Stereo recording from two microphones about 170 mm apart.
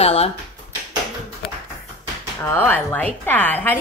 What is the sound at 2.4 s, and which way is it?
Speech, 10° left (ahead or behind).